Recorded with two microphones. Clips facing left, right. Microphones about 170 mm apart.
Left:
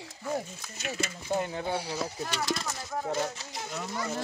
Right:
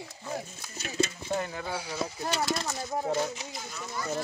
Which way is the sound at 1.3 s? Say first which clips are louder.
Left 2 dB; 20° left (ahead or behind).